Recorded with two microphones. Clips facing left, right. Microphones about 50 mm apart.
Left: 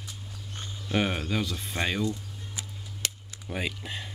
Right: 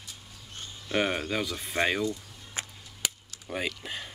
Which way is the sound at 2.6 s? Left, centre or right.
Right.